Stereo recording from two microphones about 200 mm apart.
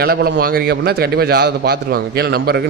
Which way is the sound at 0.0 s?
50° right (ahead or behind).